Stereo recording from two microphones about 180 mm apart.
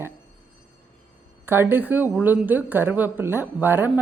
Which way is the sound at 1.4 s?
10° right (ahead or behind).